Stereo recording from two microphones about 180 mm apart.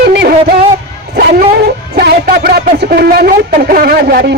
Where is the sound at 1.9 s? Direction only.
55° right (ahead or behind).